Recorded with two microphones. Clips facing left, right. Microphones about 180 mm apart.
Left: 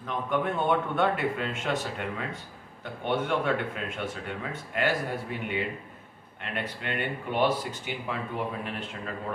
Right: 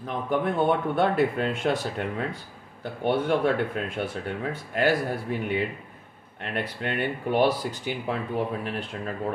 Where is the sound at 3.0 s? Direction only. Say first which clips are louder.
Right 4 dB; 35° right (ahead or behind).